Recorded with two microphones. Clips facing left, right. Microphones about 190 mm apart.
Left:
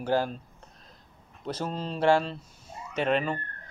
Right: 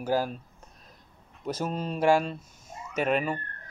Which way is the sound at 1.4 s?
10° right (ahead or behind).